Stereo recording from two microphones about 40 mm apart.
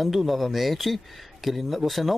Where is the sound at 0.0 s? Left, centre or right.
Centre.